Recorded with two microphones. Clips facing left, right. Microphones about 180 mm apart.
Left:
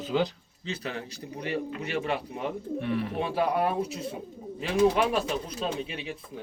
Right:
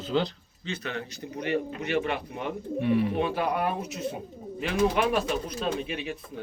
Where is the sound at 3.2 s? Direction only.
30° left (ahead or behind).